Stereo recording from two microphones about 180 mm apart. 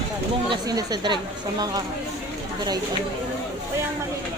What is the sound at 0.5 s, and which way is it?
Speech, 20° right (ahead or behind).